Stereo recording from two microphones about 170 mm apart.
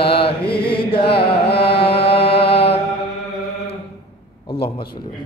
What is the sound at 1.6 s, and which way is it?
Music, 70° left (ahead or behind).